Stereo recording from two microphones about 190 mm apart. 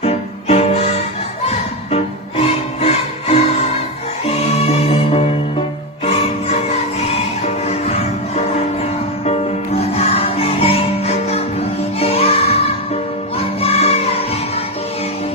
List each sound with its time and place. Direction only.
0.0 s music: 35° left (ahead or behind)
2.8 s music: 35° left (ahead or behind)